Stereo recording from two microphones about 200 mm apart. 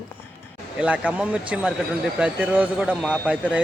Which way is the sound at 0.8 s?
5° right (ahead or behind).